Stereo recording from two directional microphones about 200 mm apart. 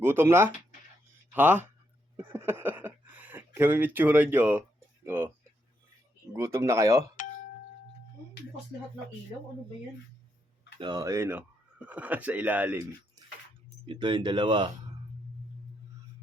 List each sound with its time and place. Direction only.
0.0 s speech: 10° right (ahead or behind)
2.1 s a sound: 10° right (ahead or behind)
5.0 s speech: 10° right (ahead or behind)
6.3 s speech: 15° right (ahead or behind)
10.8 s speech: 20° right (ahead or behind)
13.8 s speech: 25° right (ahead or behind)